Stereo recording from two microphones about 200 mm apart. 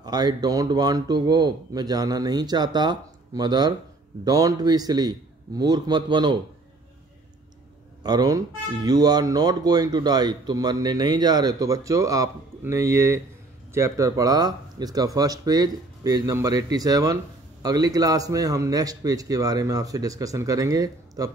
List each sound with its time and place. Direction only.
0.0 s speech: 20° right (ahead or behind)
8.0 s speech: 20° right (ahead or behind)